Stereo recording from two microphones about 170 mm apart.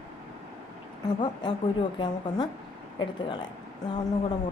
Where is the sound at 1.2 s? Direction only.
25° left (ahead or behind).